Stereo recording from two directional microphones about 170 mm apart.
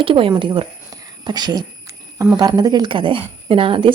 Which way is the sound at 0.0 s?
30° right (ahead or behind).